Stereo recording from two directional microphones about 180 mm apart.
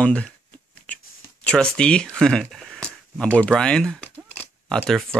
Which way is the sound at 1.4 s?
5° left (ahead or behind).